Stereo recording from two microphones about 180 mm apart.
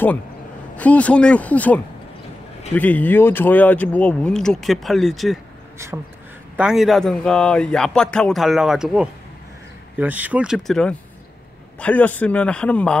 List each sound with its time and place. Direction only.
0.7 s speech: 10° left (ahead or behind)
5.8 s speech: 15° right (ahead or behind)
6.5 s a man's voice: 5° right (ahead or behind)